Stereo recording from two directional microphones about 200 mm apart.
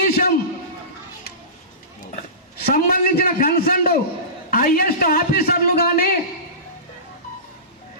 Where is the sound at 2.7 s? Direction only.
45° left (ahead or behind).